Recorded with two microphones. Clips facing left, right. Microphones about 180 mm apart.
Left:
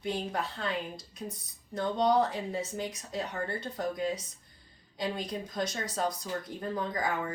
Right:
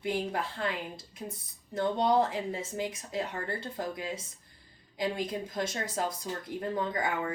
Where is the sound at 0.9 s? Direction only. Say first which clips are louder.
Left 1 dB; 25° right (ahead or behind).